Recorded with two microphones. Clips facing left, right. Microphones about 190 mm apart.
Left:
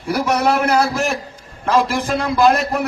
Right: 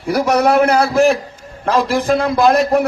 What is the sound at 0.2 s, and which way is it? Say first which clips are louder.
A man's voice: right 5 dB; 55° right (ahead or behind).